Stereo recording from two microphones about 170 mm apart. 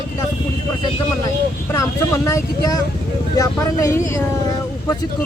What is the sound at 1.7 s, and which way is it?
Speech, 15° left (ahead or behind).